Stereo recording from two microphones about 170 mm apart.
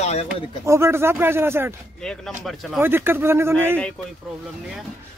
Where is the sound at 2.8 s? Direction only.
15° right (ahead or behind).